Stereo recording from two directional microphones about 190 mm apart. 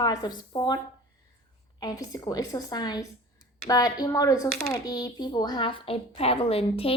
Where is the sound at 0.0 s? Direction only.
20° left (ahead or behind).